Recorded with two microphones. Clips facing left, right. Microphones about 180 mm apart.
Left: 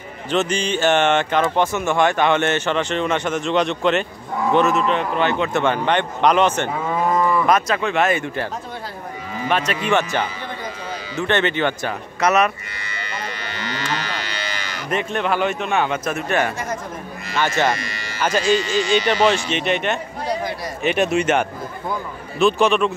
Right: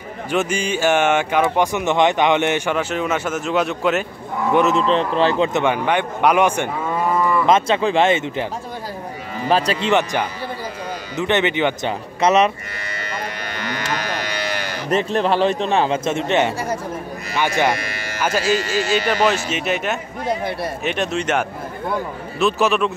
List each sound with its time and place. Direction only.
0.3 s speech: 10° right (ahead or behind)
4.7 s speech: 30° right (ahead or behind)
5.5 s speech: 15° right (ahead or behind)
7.1 s cattle: 15° left (ahead or behind)
7.4 s speech: 25° right (ahead or behind)
9.5 s speech: 30° right (ahead or behind)
9.8 s speech: 15° right (ahead or behind)
12.2 s speech: 25° right (ahead or behind)
13.5 s cattle: 45° right (ahead or behind)
14.9 s speech: 35° right (ahead or behind); by 20.0 s 5° right (ahead or behind)
20.8 s speech: 5° left (ahead or behind)
22.4 s speech: centre (ahead or behind)